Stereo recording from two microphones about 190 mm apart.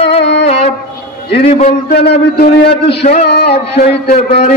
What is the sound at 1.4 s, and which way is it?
A man's voice, 40° left (ahead or behind).